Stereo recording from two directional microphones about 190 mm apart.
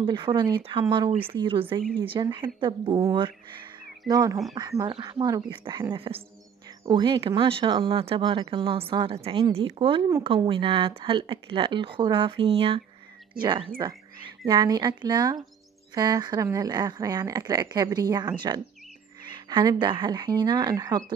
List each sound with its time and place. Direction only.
0.0 s speech: 25° right (ahead or behind)